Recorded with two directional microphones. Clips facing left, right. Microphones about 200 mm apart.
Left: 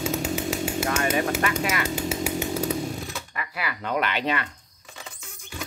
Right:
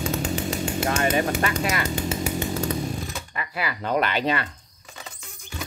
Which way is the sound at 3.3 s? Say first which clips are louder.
Right 2 dB; 30° right (ahead or behind).